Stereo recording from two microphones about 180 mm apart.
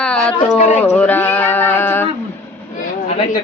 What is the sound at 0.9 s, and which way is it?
Mantra, 10° left (ahead or behind).